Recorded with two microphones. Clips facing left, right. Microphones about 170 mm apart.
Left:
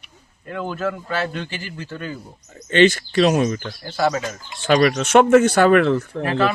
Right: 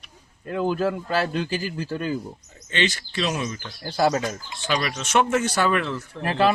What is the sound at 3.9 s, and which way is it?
Speech, 35° right (ahead or behind).